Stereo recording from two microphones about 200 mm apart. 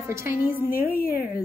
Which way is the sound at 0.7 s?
45° left (ahead or behind).